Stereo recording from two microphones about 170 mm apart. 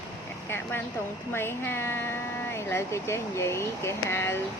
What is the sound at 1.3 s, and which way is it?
Speech, 15° left (ahead or behind).